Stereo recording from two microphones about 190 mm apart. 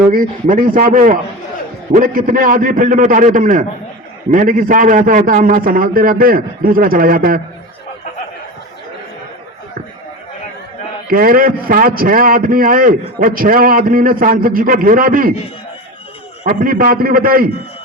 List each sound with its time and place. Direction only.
0.0 s a man's voice: 45° right (ahead or behind)
11.1 s a man's voice: 50° right (ahead or behind)
16.4 s a man's voice: 45° right (ahead or behind)